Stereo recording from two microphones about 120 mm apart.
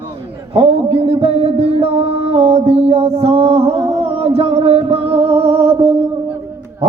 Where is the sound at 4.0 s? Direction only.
60° right (ahead or behind).